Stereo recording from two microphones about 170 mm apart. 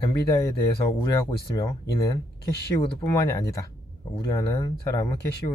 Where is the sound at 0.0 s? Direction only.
25° left (ahead or behind).